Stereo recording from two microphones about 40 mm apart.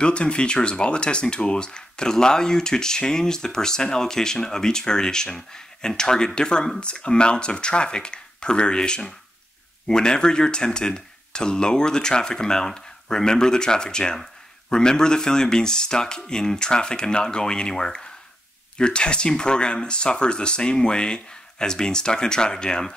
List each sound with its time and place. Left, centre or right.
0.0 s speech: left